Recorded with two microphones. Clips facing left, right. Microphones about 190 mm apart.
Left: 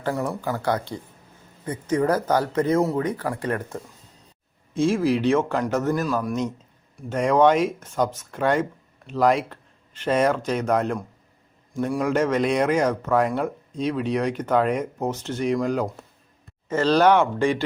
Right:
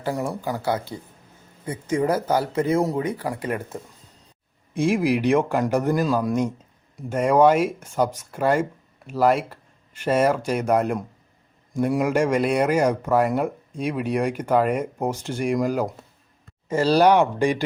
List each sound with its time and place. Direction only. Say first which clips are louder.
0.0 s speech: even; 15° right (ahead or behind)
7.1 s speech: right 1 dB; 10° right (ahead or behind)